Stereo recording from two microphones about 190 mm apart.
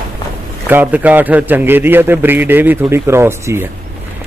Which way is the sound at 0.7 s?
10° right (ahead or behind).